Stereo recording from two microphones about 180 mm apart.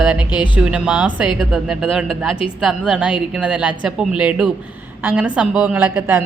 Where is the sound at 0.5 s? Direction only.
5° right (ahead or behind).